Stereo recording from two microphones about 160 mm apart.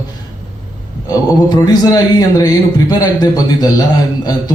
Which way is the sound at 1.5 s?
25° left (ahead or behind).